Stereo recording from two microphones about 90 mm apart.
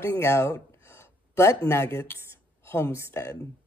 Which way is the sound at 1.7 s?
30° left (ahead or behind).